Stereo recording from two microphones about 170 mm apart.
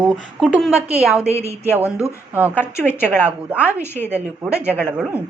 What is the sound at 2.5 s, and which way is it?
Speech, 10° left (ahead or behind).